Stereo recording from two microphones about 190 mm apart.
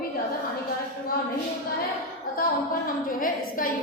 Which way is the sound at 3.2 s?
45° left (ahead or behind).